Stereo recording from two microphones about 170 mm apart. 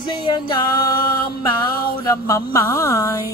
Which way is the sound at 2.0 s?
20° left (ahead or behind).